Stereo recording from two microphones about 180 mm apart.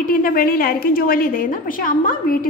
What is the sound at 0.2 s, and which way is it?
A woman's voice, 55° left (ahead or behind).